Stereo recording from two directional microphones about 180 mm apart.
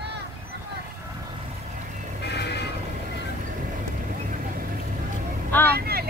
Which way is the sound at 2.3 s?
65° left (ahead or behind).